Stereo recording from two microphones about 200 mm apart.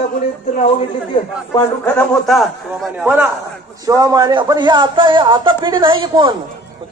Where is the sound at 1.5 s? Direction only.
10° left (ahead or behind).